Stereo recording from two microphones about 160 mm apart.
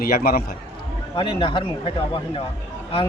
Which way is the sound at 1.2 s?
35° left (ahead or behind).